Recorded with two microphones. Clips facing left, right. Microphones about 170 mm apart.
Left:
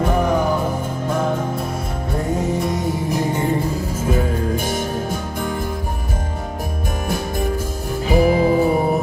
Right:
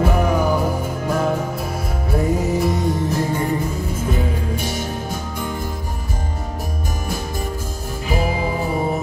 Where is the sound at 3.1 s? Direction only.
15° left (ahead or behind).